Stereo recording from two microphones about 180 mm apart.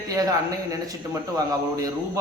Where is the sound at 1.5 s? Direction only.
20° right (ahead or behind).